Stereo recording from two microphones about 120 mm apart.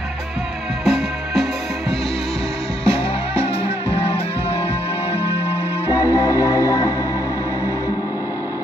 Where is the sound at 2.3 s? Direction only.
55° left (ahead or behind).